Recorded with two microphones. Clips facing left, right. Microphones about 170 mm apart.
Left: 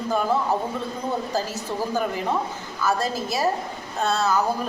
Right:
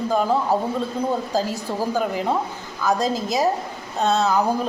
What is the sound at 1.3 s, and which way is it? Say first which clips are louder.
A woman's voice: right 3 dB; 15° right (ahead or behind).